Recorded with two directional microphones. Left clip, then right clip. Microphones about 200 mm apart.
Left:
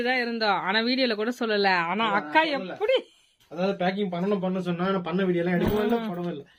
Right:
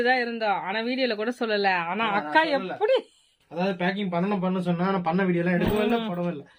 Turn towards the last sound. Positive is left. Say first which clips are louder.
# right 1 dB
turn(degrees=-5)  # may be behind; listen again after turning